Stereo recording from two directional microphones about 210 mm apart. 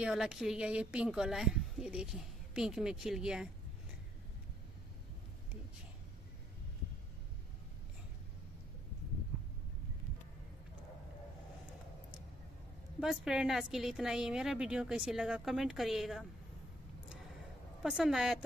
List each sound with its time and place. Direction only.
0.0 s a woman's voice: 5° right (ahead or behind)
13.0 s a woman's voice: centre (ahead or behind)
17.8 s a woman's voice: centre (ahead or behind)